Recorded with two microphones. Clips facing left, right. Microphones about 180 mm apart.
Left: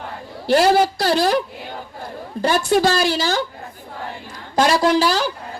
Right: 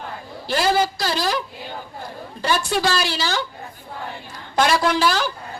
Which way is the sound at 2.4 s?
50° left (ahead or behind).